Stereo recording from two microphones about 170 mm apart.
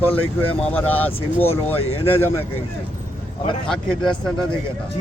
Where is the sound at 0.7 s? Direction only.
10° left (ahead or behind).